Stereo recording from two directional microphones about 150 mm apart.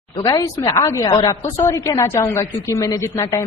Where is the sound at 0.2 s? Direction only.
25° left (ahead or behind).